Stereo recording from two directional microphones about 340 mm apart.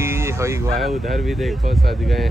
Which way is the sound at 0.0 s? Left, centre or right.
Centre.